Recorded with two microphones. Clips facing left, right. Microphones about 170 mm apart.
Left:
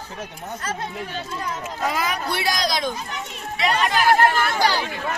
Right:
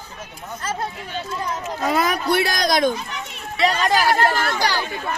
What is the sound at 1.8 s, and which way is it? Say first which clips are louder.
Speech: right 5 dB; 45° right (ahead or behind).